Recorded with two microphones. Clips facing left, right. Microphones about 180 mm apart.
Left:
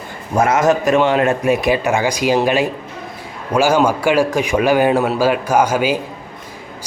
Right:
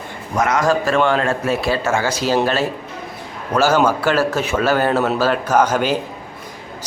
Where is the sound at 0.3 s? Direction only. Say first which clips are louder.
Left 3 dB; 25° left (ahead or behind).